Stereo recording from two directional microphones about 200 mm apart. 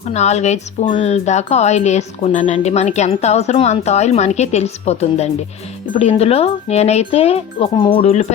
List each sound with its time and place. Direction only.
0.1 s speech: 35° left (ahead or behind)